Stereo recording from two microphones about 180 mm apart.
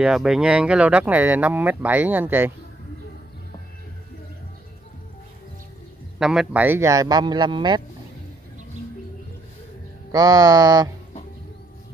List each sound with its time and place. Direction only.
0.0 s speech: 5° right (ahead or behind)
6.1 s speech: 5° right (ahead or behind); by 7.8 s 25° right (ahead or behind)
10.1 s speech: 20° right (ahead or behind)